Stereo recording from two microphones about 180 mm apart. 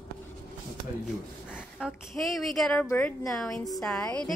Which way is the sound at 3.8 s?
15° left (ahead or behind).